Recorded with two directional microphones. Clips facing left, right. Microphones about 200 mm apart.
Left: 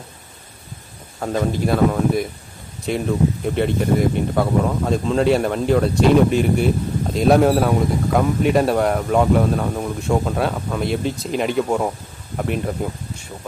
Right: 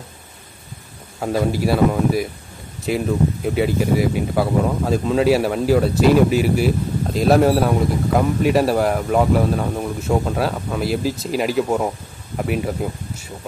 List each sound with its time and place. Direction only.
1.2 s speech: 5° right (ahead or behind)